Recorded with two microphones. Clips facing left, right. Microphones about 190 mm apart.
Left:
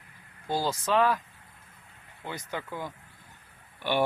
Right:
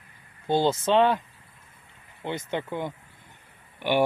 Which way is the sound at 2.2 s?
25° right (ahead or behind).